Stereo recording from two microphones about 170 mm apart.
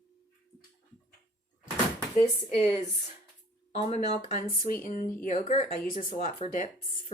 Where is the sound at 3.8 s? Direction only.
45° left (ahead or behind).